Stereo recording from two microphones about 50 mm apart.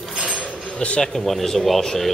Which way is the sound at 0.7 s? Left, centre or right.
Centre.